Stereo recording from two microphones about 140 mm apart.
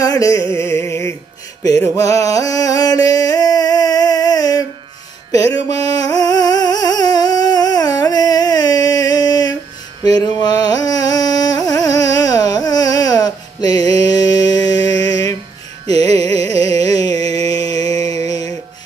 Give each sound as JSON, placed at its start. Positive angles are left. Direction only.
{"t": 0.0, "sound": "music", "side_deg": 25}
{"t": 2.0, "sound": "a sound", "side_deg": 25}
{"t": 5.7, "sound": "a sound", "side_deg": 25}
{"t": 10.0, "sound": "carnatic music", "side_deg": 25}
{"t": 16.5, "sound": "carnatic music", "side_deg": 25}
{"t": 17.8, "sound": "music", "side_deg": -50}